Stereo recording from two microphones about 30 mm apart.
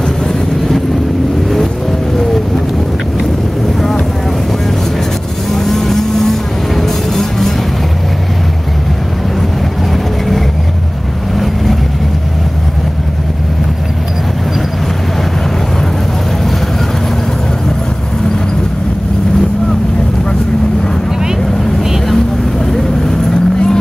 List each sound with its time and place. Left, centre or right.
5.5 s vehicle: centre
6.8 s music: centre
22.7 s vehicle: centre